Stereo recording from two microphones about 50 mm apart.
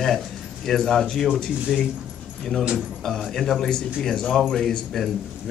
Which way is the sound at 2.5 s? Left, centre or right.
Centre.